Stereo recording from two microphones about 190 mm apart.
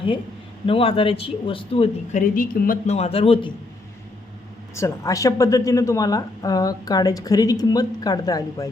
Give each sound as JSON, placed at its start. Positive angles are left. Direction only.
{"t": 0.7, "sound": "speech", "side_deg": 30}
{"t": 2.1, "sound": "a man's voice", "side_deg": 45}
{"t": 4.7, "sound": "speech", "side_deg": 15}